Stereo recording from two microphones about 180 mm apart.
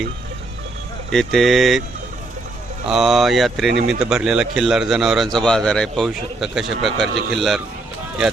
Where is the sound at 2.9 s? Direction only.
Centre (ahead or behind).